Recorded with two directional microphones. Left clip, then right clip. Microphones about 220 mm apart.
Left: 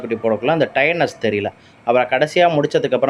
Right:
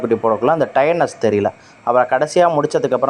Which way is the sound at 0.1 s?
10° right (ahead or behind).